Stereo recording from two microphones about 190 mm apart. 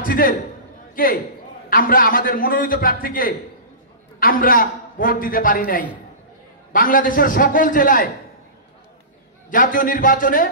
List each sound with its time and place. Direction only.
0.0 s a man's voice: 45° left (ahead or behind)
9.5 s a man's voice: 45° left (ahead or behind)